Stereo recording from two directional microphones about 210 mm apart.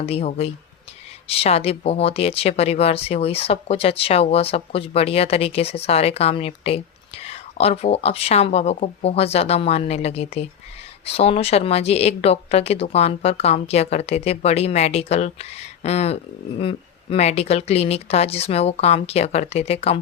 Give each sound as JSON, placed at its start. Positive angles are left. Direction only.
{"t": 0.0, "sound": "speech", "side_deg": 30}